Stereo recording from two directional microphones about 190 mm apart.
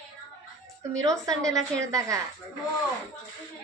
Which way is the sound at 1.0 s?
15° right (ahead or behind).